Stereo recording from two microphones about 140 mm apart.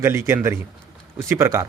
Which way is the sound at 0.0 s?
20° right (ahead or behind).